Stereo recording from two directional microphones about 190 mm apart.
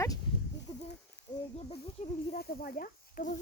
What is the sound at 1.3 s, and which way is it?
Speech, 20° left (ahead or behind).